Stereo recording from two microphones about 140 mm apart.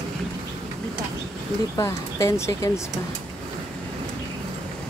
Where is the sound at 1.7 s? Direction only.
25° left (ahead or behind).